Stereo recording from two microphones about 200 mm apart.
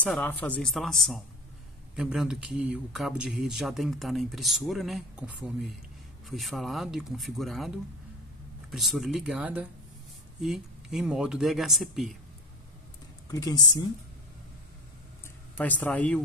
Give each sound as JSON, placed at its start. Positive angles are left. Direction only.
{"t": 0.0, "sound": "speech", "side_deg": 10}
{"t": 13.3, "sound": "speech", "side_deg": 20}
{"t": 15.5, "sound": "speech", "side_deg": 10}